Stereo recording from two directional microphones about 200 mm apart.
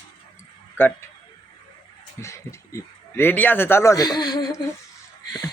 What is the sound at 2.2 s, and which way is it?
A woman's voice, 15° left (ahead or behind).